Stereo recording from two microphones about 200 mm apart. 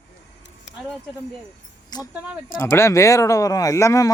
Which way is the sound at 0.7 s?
65° left (ahead or behind).